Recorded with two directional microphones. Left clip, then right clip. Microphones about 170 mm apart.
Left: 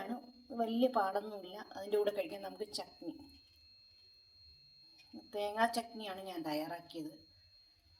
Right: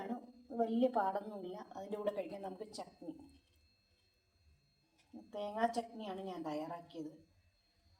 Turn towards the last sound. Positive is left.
turn(degrees=0)  # may be behind; listen again after turning